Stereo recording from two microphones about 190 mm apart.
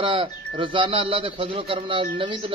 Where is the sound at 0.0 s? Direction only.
30° right (ahead or behind).